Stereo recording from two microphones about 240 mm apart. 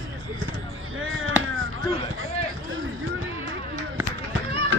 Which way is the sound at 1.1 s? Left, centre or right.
Right.